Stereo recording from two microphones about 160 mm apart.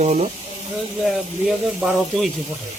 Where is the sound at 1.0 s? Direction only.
5° right (ahead or behind).